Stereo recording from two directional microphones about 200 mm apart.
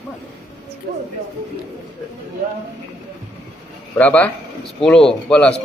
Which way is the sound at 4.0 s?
10° left (ahead or behind).